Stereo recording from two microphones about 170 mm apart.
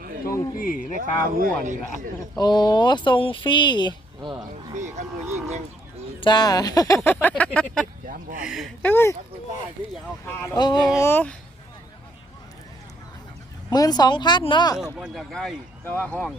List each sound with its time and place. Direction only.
0.3 s speech: 55° left (ahead or behind)
1.2 s speech: 55° right (ahead or behind)
2.4 s speech: 25° left (ahead or behind)
4.7 s speech: 45° right (ahead or behind)
6.1 s speech: 25° left (ahead or behind); by 7.9 s 5° left (ahead or behind)
8.0 s speech: 55° right (ahead or behind)
8.4 s speech: centre (ahead or behind)
10.2 s speech: 20° left (ahead or behind)
13.7 s speech: 20° left (ahead or behind)
14.9 s speech: centre (ahead or behind)